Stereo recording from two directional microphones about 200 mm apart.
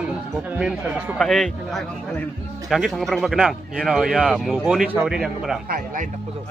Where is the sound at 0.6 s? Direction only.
5° right (ahead or behind).